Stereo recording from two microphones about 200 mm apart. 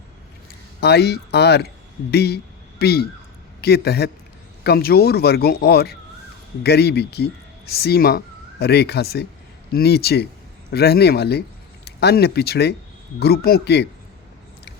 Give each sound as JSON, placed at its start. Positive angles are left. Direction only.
{"t": 0.8, "sound": "speech", "side_deg": 55}